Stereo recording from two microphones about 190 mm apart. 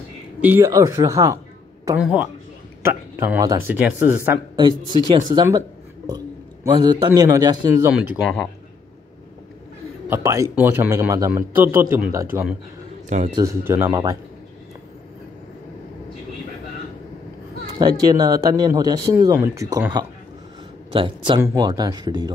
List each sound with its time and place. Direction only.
0.4 s a man's voice: 10° right (ahead or behind)
2.8 s a man's voice: 10° right (ahead or behind)
4.6 s a man's voice: 25° right (ahead or behind)
10.0 s a man's voice: 15° right (ahead or behind)
17.7 s speech: 20° right (ahead or behind)